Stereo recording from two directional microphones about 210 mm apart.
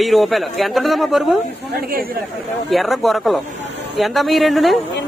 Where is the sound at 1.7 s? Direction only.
45° right (ahead or behind).